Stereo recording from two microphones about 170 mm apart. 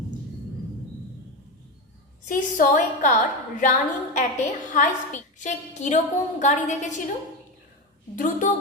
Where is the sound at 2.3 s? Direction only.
50° left (ahead or behind).